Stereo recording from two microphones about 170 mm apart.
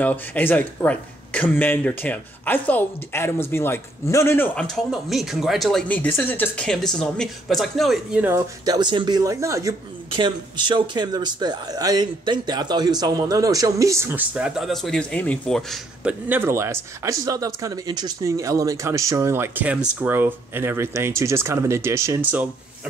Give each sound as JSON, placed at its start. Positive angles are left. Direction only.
{"t": 0.0, "sound": "speech", "side_deg": 10}
{"t": 4.6, "sound": "speech", "side_deg": 0}
{"t": 8.6, "sound": "speech", "side_deg": -25}